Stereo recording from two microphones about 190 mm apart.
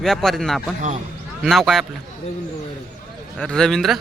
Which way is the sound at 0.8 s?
40° right (ahead or behind).